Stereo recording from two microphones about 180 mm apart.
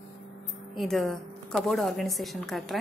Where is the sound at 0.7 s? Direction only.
Centre (ahead or behind).